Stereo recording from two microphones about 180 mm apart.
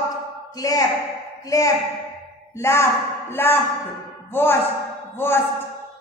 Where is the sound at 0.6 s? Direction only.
20° left (ahead or behind).